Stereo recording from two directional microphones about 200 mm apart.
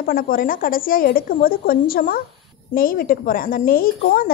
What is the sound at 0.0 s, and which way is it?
A woman's voice, 45° left (ahead or behind).